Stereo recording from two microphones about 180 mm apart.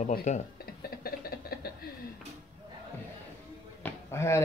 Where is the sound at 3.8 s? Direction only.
15° left (ahead or behind).